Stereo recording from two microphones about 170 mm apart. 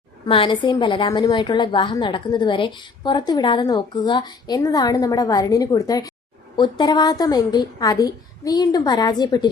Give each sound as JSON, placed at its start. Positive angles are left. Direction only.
{"t": 0.3, "sound": "a woman's voice", "side_deg": 30}